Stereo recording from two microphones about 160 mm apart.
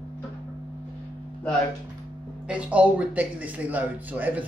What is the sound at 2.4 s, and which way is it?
Speech, 5° right (ahead or behind).